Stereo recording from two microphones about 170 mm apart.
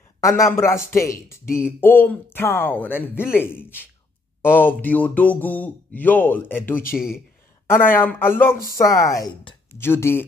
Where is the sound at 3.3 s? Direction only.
15° left (ahead or behind).